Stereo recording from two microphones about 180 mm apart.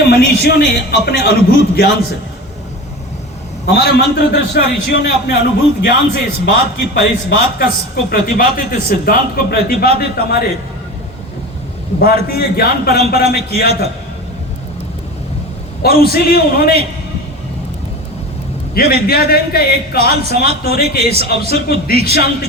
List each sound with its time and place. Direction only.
0.0 s a man's voice: 60° left (ahead or behind)
3.7 s a man's voice: 60° left (ahead or behind)
11.9 s a man's voice: 55° left (ahead or behind)
15.8 s a man's voice: 60° left (ahead or behind)
18.7 s a man's voice: 60° left (ahead or behind)